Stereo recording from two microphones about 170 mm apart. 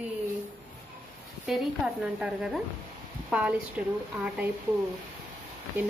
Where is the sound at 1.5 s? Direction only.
5° right (ahead or behind).